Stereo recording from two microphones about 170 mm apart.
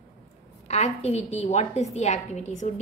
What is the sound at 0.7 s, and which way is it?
A woman's voice, 40° left (ahead or behind).